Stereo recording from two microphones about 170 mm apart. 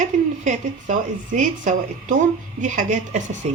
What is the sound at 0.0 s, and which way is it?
A woman's voice, 45° right (ahead or behind).